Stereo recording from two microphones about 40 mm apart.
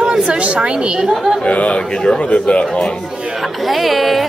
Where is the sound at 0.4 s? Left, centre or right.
Right.